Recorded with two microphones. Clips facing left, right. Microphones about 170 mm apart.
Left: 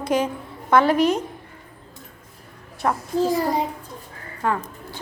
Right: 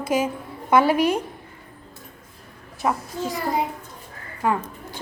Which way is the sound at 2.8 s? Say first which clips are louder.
Even; 5° right (ahead or behind).